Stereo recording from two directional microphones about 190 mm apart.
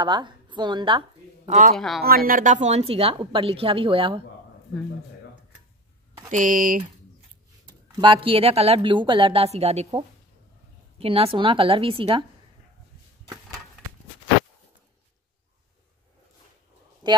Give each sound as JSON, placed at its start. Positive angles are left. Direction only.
{"t": 0.0, "sound": "a woman's voice", "side_deg": -25}
{"t": 1.5, "sound": "speech", "side_deg": -40}
{"t": 2.0, "sound": "a woman's voice", "side_deg": -50}
{"t": 6.3, "sound": "speech", "side_deg": -45}
{"t": 7.9, "sound": "a woman's voice", "side_deg": -25}
{"t": 17.0, "sound": "speech", "side_deg": -25}